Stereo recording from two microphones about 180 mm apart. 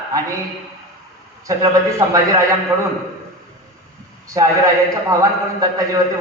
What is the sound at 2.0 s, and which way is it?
Speech, 15° right (ahead or behind).